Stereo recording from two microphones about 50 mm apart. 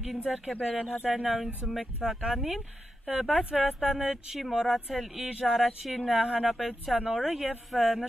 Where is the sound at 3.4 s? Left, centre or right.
Right.